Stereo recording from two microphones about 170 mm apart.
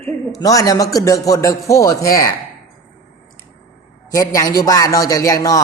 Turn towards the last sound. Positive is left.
turn(degrees=20)  # may be behind; listen again after turning